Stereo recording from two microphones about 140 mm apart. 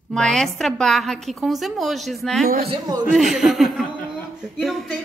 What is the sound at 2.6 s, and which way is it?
Speech, 30° right (ahead or behind).